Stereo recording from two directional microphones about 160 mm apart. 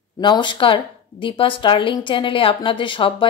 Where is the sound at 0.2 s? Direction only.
30° left (ahead or behind).